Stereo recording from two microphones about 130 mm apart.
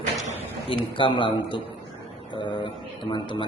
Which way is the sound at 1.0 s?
40° left (ahead or behind).